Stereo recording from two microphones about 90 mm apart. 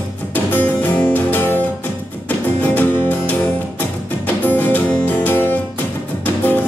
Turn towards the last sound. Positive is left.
turn(degrees=20)  # may be behind; listen again after turning